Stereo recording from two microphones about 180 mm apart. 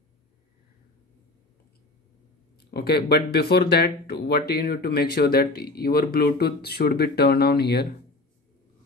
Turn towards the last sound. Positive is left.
turn(degrees=60)  # may be behind; listen again after turning